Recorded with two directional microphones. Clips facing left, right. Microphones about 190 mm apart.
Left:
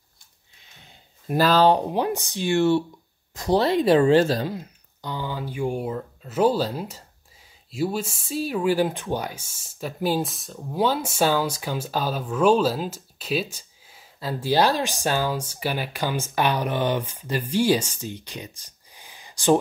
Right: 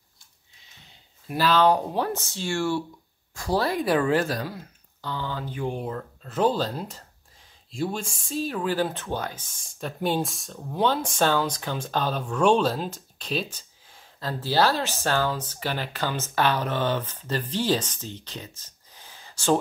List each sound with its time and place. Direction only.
1.2 s speech: 40° left (ahead or behind)
1.7 s speech: 20° left (ahead or behind)